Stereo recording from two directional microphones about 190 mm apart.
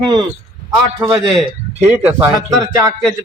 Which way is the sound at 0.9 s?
20° right (ahead or behind).